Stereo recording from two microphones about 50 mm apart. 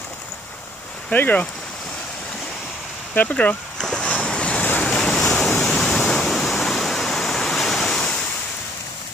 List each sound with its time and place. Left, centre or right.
1.1 s speech: left
3.2 s speech: left
3.7 s boat: centre
4.4 s waves: left
4.8 s waves: centre